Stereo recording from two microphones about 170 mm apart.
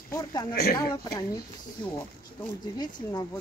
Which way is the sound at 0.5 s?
65° left (ahead or behind).